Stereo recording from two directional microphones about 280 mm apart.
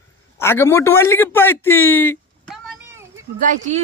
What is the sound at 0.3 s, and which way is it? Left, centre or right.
A man's voice, centre.